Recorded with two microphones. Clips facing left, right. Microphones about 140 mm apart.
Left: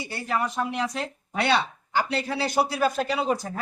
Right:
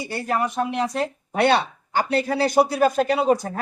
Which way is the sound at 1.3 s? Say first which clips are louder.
Right 4 dB; 50° right (ahead or behind).